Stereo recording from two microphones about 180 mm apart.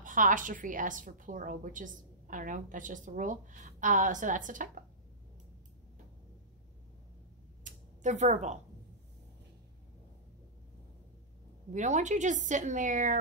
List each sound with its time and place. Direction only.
0.0 s a woman's voice: 45° right (ahead or behind)
7.6 s a sound: 40° right (ahead or behind)
11.7 s a woman's voice: 40° right (ahead or behind)